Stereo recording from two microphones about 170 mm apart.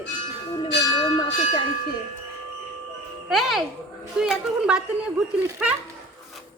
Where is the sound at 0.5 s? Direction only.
30° left (ahead or behind).